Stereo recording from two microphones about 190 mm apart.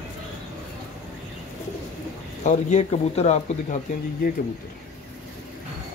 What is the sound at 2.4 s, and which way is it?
Speech, 40° left (ahead or behind).